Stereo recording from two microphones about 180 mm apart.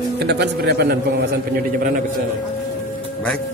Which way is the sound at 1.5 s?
55° right (ahead or behind).